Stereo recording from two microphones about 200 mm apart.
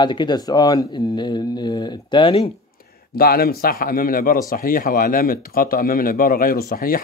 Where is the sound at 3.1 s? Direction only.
50° left (ahead or behind).